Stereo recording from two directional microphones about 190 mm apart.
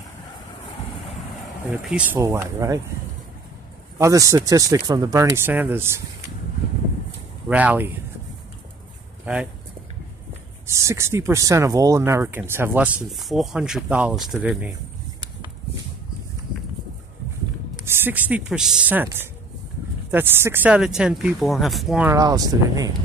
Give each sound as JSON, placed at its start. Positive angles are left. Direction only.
{"t": 1.8, "sound": "speech", "side_deg": -5}
{"t": 2.1, "sound": "speech", "side_deg": -15}
{"t": 4.0, "sound": "speech", "side_deg": -15}
{"t": 7.4, "sound": "speech", "side_deg": -10}
{"t": 9.2, "sound": "speech", "side_deg": -5}
{"t": 10.7, "sound": "speech", "side_deg": -15}
{"t": 17.8, "sound": "speech", "side_deg": -10}
{"t": 22.1, "sound": "speech", "side_deg": -20}